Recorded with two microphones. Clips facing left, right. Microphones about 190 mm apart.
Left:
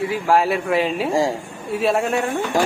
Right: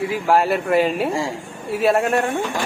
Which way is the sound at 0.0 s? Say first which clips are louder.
Even; centre (ahead or behind).